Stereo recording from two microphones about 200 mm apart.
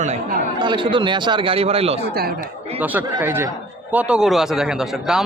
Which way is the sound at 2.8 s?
10° right (ahead or behind).